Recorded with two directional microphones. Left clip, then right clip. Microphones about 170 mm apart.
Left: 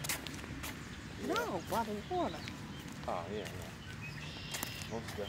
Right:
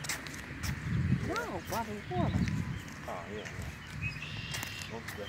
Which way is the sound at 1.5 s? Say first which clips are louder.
Even; 5° right (ahead or behind).